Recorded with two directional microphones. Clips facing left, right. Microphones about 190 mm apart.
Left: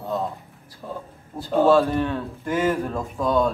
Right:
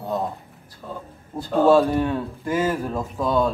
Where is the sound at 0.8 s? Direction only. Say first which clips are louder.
Left 1 dB; 5° left (ahead or behind).